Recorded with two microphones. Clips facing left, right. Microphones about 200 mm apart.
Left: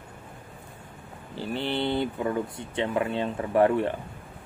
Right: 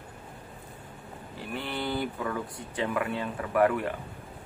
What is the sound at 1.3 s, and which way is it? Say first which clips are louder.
Speech: left 6 dB; 30° left (ahead or behind).